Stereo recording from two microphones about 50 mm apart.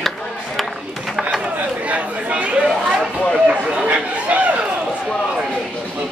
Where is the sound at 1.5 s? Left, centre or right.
Right.